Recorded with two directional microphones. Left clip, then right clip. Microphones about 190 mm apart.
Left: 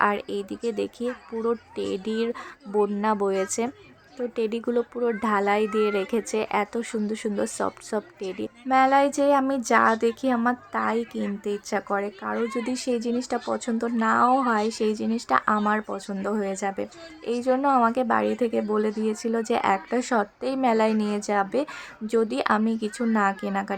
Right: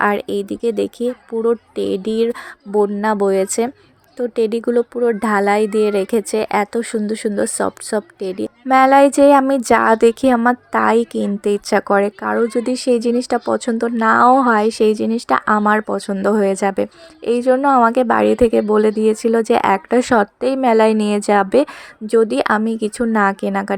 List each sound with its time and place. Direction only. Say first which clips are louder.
0.0 s a woman's voice: right 7 dB; 30° right (ahead or behind)